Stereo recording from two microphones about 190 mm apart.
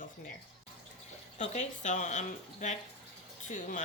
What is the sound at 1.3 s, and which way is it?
Speech, 40° left (ahead or behind).